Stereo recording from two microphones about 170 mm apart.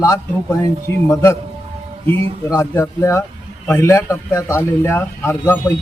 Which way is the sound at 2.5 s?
15° left (ahead or behind).